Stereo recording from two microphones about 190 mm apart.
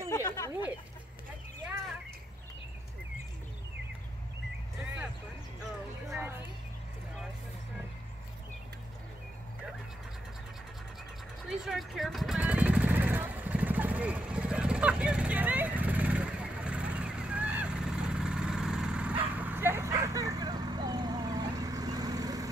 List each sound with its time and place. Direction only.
0.1 s chatter: 20° left (ahead or behind)
6.1 s a sound: 10° right (ahead or behind)
11.4 s vehicle: centre (ahead or behind); by 22.5 s 20° right (ahead or behind)